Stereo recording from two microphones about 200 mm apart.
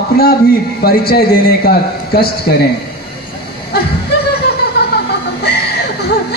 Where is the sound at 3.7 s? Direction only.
50° left (ahead or behind).